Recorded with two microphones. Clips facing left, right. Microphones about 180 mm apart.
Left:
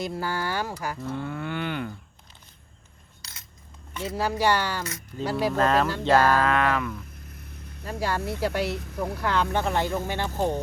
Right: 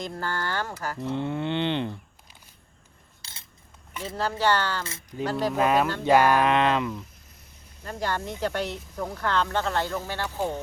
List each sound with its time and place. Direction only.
0.0 s speech: 10° left (ahead or behind)
0.9 s speech: 20° right (ahead or behind)
3.2 s cutlery: 30° right (ahead or behind)
4.0 s speech: 10° left (ahead or behind)
4.8 s speech: 30° right (ahead or behind)
5.2 s speech: 10° left (ahead or behind)
5.5 s speech: 10° right (ahead or behind)
7.9 s speech: 10° left (ahead or behind)
10.3 s speech: 45° left (ahead or behind)